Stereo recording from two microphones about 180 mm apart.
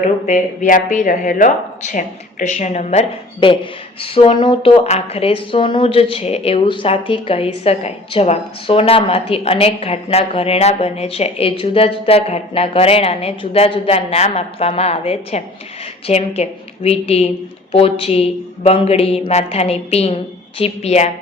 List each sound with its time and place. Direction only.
0.3 s speech: 45° left (ahead or behind)